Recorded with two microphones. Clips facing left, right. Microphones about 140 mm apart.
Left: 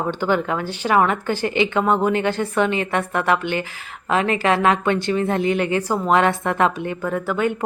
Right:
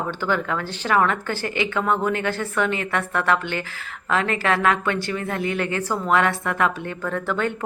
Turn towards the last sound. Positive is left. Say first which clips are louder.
# left 3 dB
turn(degrees=10)  # may be behind; listen again after turning